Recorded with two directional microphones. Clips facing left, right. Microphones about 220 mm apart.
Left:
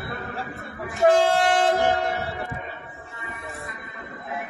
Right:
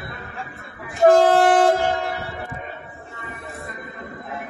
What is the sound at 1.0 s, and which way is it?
Train, 40° right (ahead or behind).